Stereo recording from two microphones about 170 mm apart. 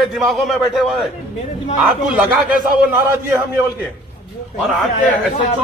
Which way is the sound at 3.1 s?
15° right (ahead or behind).